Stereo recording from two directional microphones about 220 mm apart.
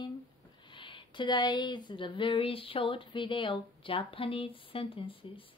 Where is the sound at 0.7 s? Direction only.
20° left (ahead or behind).